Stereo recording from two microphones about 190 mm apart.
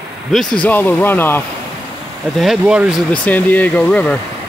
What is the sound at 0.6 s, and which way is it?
Speech, 10° left (ahead or behind).